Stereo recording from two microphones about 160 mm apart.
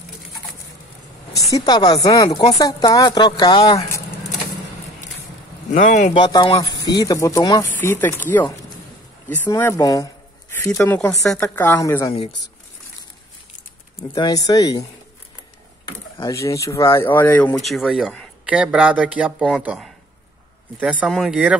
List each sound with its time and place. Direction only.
1.5 s speech: 25° left (ahead or behind)
5.7 s speech: 50° left (ahead or behind)
6.1 s speech: 30° left (ahead or behind)
13.9 s speech: 30° left (ahead or behind)
16.3 s speech: 20° left (ahead or behind); by 21.5 s 5° right (ahead or behind)